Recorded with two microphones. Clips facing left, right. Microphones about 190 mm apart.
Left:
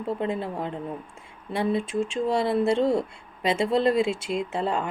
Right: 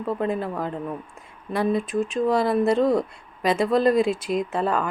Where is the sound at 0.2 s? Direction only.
25° left (ahead or behind).